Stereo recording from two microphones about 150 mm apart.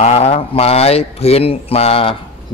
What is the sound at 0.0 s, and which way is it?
Speech, 45° left (ahead or behind).